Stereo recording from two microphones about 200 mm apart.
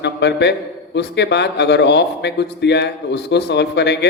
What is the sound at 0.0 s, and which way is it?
A man's voice, 60° left (ahead or behind).